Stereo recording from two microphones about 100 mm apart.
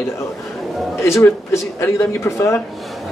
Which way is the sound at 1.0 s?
25° left (ahead or behind).